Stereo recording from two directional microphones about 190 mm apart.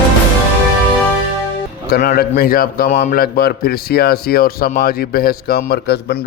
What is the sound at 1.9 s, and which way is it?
A man's voice, 50° left (ahead or behind).